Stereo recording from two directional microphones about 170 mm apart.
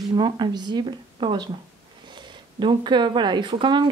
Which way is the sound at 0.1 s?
25° right (ahead or behind).